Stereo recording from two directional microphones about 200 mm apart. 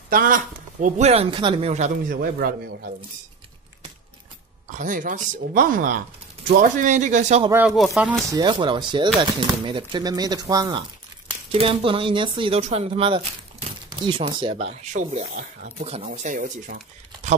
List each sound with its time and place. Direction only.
0.1 s speech: 45° right (ahead or behind)
2.1 s a man's voice: 50° right (ahead or behind)
4.6 s speech: 40° right (ahead or behind)
7.5 s speech: 5° right (ahead or behind)
8.3 s speech: 20° right (ahead or behind); by 17.4 s 40° right (ahead or behind)